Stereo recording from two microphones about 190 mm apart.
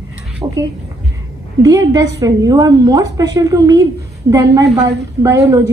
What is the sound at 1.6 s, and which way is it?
A woman's voice, 20° right (ahead or behind).